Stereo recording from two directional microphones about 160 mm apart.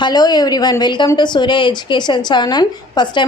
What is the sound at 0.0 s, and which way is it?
A woman's voice, 25° left (ahead or behind).